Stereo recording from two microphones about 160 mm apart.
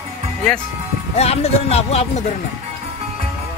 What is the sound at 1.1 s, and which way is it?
Speech, 40° left (ahead or behind).